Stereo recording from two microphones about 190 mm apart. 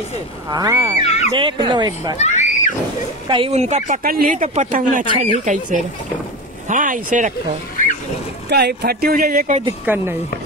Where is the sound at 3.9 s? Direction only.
50° right (ahead or behind).